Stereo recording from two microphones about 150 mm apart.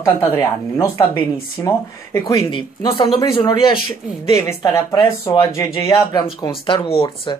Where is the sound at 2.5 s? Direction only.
35° left (ahead or behind).